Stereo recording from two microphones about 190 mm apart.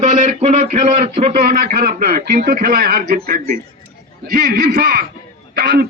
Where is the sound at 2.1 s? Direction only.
55° right (ahead or behind).